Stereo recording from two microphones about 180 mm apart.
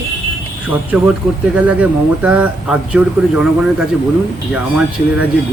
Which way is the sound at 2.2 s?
10° right (ahead or behind).